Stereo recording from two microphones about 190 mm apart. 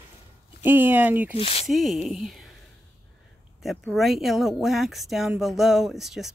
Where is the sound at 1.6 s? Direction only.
Centre (ahead or behind).